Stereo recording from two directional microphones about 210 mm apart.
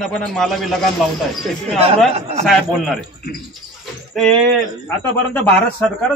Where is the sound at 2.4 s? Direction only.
Centre (ahead or behind).